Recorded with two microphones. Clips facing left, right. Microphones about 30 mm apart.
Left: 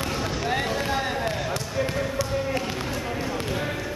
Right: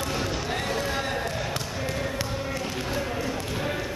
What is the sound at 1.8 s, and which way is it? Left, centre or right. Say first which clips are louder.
Basketball bounce: left 7 dB; centre.